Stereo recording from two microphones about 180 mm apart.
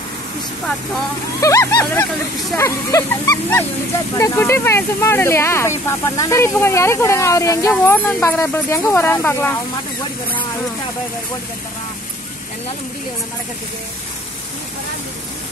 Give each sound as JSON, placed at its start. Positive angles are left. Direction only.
{"t": 1.4, "sound": "speech", "side_deg": 20}